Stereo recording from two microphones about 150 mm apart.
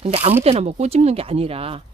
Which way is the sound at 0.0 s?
45° right (ahead or behind).